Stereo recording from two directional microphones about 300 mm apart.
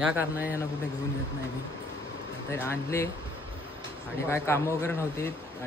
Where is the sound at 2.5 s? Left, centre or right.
Centre.